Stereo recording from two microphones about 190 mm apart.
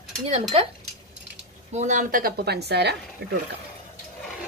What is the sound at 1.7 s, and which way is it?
Speech, 40° right (ahead or behind).